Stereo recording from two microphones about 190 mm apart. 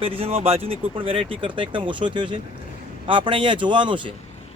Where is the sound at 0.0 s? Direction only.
30° right (ahead or behind).